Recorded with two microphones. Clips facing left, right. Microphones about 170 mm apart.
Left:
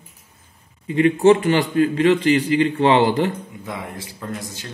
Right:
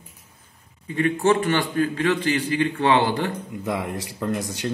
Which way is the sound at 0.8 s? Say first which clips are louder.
Left 6 dB; 20° left (ahead or behind).